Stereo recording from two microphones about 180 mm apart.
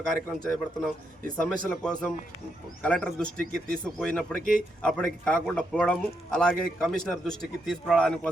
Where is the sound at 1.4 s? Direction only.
5° left (ahead or behind).